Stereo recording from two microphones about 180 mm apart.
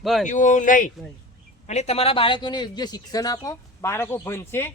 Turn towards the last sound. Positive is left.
turn(degrees=15)  # may be behind; listen again after turning